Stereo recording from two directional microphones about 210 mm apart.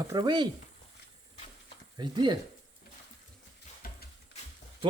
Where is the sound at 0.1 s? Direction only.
20° right (ahead or behind).